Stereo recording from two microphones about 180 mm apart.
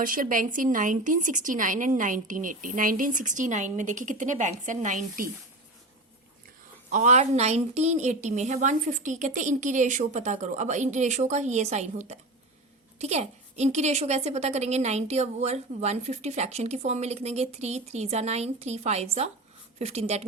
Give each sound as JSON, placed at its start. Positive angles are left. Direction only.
{"t": 0.0, "sound": "speech", "side_deg": -50}
{"t": 6.9, "sound": "a woman's voice", "side_deg": -40}